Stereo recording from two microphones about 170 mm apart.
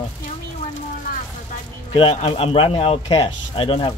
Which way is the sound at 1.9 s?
30° left (ahead or behind).